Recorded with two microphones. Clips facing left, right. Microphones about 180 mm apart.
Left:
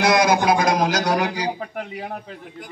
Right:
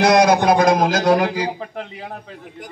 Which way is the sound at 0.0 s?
55° right (ahead or behind).